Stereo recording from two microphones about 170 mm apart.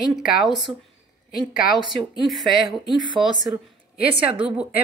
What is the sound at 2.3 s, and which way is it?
Speech, centre (ahead or behind).